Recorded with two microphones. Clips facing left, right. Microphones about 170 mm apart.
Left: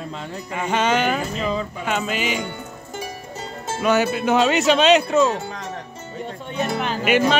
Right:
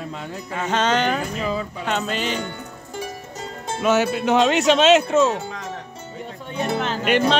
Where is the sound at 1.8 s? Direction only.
5° left (ahead or behind).